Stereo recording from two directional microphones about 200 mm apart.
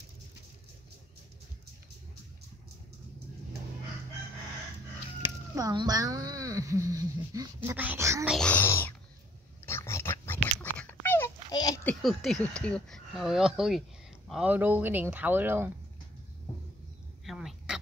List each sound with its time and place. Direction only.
5.2 s speech: 15° right (ahead or behind)
8.3 s a sound: 5° left (ahead or behind)
9.7 s dog: 15° left (ahead or behind)
11.8 s speech: 5° left (ahead or behind)
17.2 s dog: centre (ahead or behind)